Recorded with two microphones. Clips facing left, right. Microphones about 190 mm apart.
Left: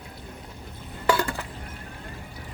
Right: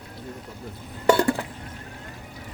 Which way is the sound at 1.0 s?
25° right (ahead or behind).